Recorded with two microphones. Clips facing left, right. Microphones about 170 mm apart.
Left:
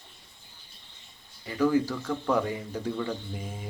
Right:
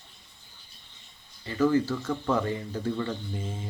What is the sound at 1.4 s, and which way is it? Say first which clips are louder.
Speech: right 1 dB; 10° left (ahead or behind).